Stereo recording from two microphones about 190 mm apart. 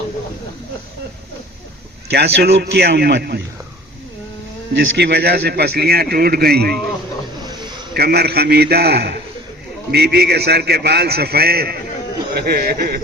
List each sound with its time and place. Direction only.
2.0 s a man's voice: 60° right (ahead or behind)
4.7 s a man's voice: 60° right (ahead or behind)
7.4 s a sound: 25° right (ahead or behind)
7.9 s a man's voice: 55° right (ahead or behind)